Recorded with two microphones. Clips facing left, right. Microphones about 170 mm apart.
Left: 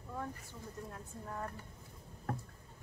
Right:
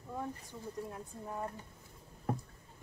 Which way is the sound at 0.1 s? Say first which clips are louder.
Right 2 dB; 15° right (ahead or behind).